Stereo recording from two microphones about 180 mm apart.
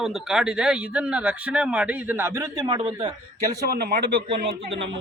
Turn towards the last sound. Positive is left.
turn(degrees=-30)  # may be behind; listen again after turning